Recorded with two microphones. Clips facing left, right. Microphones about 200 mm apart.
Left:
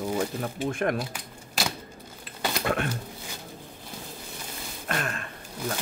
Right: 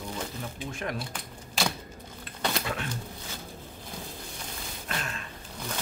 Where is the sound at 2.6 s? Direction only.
55° left (ahead or behind).